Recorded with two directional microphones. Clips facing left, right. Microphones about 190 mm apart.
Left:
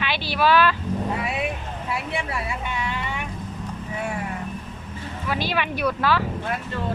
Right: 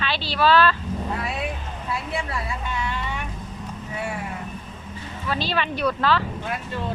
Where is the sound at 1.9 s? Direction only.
15° left (ahead or behind).